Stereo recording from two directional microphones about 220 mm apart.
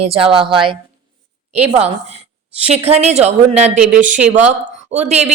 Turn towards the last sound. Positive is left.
turn(degrees=-30)  # may be behind; listen again after turning